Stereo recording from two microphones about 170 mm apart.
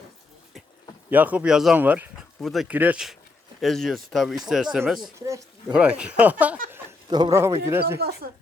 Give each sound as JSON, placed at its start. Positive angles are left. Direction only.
{"t": 1.1, "sound": "speech", "side_deg": -10}
{"t": 5.2, "sound": "a sound", "side_deg": -20}
{"t": 5.7, "sound": "speech", "side_deg": -5}
{"t": 7.1, "sound": "speech", "side_deg": -25}
{"t": 7.9, "sound": "speech", "side_deg": -70}